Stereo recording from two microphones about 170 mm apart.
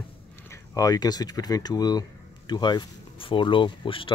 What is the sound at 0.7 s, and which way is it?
Speech, 20° left (ahead or behind).